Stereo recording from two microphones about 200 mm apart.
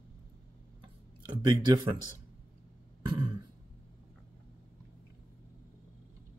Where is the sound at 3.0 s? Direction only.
25° right (ahead or behind).